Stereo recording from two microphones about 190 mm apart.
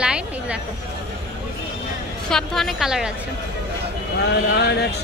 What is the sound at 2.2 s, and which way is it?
Speech, centre (ahead or behind).